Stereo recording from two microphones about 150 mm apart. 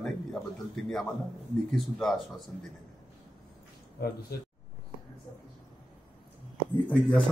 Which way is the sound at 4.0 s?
90° left.